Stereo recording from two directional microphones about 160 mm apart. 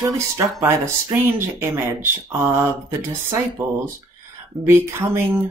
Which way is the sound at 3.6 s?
10° right (ahead or behind).